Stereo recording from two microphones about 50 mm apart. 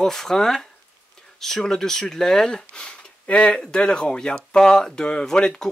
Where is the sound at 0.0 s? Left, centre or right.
Centre.